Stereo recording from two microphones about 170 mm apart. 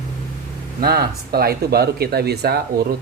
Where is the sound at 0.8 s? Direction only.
65° right (ahead or behind).